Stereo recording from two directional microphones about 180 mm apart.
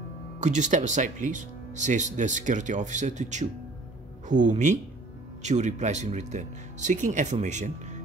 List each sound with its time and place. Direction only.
0.4 s speech: 40° right (ahead or behind)